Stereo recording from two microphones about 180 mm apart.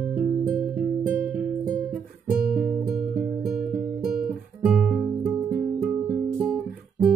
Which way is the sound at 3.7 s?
60° right (ahead or behind).